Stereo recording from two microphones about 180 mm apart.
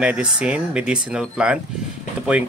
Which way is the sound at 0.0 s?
5° right (ahead or behind).